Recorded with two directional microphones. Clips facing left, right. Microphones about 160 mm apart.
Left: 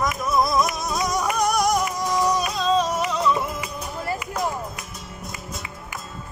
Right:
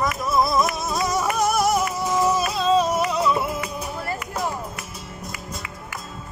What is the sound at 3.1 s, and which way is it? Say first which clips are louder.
Flamenco: right 1 dB; 10° right (ahead or behind).